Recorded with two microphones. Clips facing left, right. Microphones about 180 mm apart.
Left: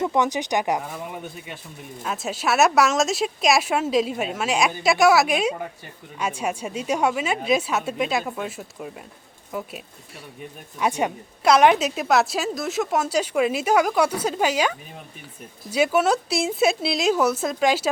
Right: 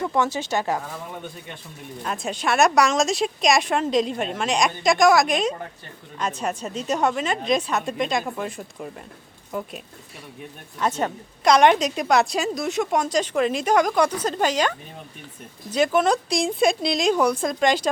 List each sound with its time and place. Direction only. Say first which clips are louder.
0.0 s a woman's voice: left 1 dB; 15° left (ahead or behind)